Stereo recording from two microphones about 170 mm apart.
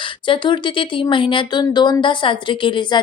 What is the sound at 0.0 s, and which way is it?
A woman's voice, 30° left (ahead or behind).